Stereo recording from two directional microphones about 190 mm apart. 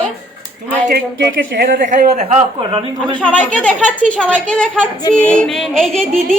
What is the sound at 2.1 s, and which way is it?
Speech, 30° right (ahead or behind).